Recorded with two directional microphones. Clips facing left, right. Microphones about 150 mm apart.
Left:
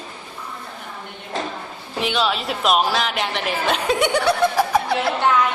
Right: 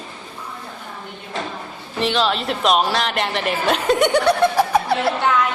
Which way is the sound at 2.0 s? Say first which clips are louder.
Right 2 dB; centre (ahead or behind).